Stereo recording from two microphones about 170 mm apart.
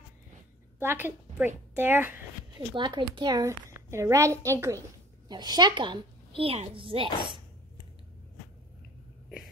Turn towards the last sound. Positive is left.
turn(degrees=-30)  # may be behind; listen again after turning